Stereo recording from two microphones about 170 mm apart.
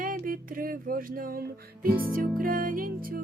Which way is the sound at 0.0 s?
55° right (ahead or behind).